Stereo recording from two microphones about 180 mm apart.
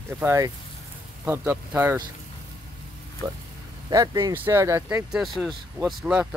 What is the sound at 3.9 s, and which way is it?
Speech, 20° right (ahead or behind).